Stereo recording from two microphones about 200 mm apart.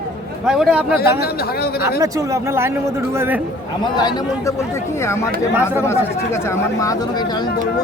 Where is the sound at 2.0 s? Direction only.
15° right (ahead or behind).